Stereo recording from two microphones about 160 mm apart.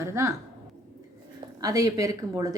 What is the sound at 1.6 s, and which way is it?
Speech, 20° right (ahead or behind).